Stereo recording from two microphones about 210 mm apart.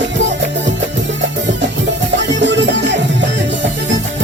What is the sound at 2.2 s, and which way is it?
Music, 60° right (ahead or behind).